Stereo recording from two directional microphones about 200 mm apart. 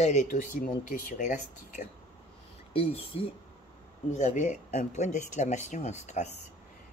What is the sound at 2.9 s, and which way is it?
Speech, 30° left (ahead or behind).